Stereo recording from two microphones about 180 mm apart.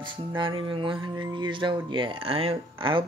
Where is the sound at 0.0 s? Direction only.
25° right (ahead or behind).